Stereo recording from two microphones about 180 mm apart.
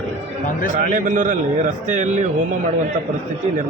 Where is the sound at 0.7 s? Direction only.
45° right (ahead or behind).